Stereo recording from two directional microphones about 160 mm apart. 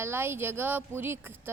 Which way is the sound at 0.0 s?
15° right (ahead or behind).